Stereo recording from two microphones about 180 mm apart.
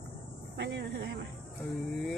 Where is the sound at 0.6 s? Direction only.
70° right (ahead or behind).